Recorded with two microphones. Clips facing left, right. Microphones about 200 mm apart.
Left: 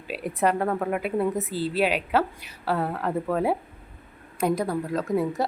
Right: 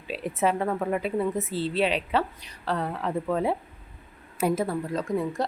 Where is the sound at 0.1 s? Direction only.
Centre (ahead or behind).